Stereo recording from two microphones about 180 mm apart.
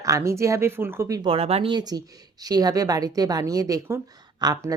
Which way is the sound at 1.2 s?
35° right (ahead or behind).